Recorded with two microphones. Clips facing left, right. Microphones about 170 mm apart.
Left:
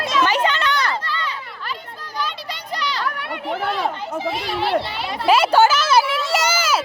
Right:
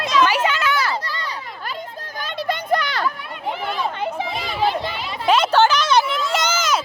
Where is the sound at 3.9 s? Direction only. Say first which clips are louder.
Right 1 dB; 60° right (ahead or behind).